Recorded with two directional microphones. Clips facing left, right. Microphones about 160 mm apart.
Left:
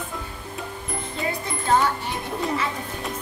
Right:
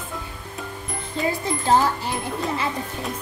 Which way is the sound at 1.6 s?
30° right (ahead or behind).